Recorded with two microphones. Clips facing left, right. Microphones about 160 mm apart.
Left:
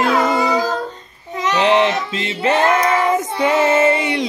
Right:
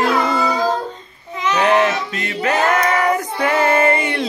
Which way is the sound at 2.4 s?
25° left (ahead or behind).